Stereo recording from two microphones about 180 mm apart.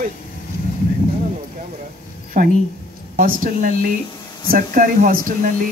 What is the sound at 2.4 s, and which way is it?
Speech, 55° right (ahead or behind).